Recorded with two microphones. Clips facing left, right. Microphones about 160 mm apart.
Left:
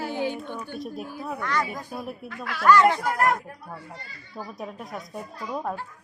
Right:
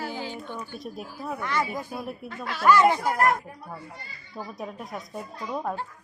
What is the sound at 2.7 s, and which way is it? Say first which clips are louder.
Speech: left 1 dB; 15° right (ahead or behind).